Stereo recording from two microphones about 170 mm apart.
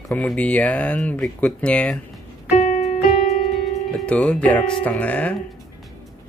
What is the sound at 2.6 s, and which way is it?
Keyboard, 40° left (ahead or behind).